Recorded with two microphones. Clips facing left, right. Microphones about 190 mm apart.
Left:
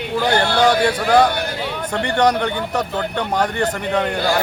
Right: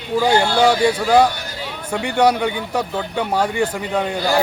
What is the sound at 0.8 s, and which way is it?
Speech, 10° right (ahead or behind).